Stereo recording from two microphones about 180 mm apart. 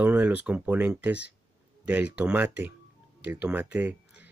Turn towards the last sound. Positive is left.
turn(degrees=-10)  # may be behind; listen again after turning